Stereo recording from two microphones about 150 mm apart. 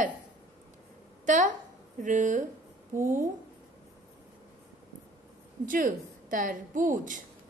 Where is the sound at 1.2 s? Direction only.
55° right (ahead or behind).